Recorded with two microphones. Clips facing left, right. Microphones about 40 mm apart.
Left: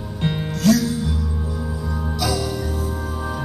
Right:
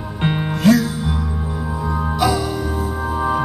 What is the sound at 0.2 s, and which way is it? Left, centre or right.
Music, right.